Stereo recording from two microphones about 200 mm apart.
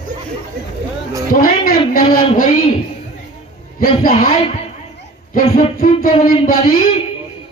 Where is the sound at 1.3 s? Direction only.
45° left (ahead or behind).